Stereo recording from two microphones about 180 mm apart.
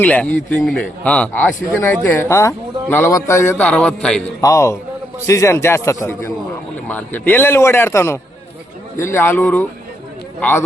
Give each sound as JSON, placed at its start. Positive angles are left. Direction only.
{"t": 0.0, "sound": "a man's voice", "side_deg": 5}
{"t": 4.4, "sound": "speech", "side_deg": 20}